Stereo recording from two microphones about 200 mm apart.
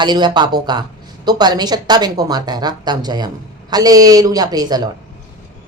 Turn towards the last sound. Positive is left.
turn(degrees=-20)  # may be behind; listen again after turning